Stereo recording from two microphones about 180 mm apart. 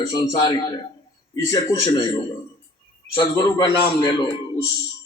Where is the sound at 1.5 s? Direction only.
20° left (ahead or behind).